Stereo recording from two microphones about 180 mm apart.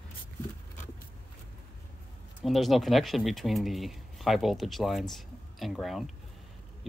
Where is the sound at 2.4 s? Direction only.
Centre (ahead or behind).